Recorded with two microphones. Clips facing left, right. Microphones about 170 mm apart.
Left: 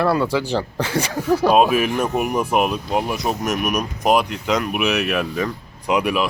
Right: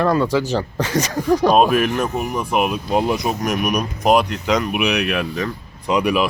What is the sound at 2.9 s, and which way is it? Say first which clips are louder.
Speech: right 7 dB; 20° right (ahead or behind).